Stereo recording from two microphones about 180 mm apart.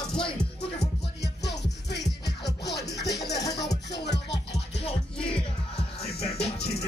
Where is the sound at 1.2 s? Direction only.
70° left (ahead or behind).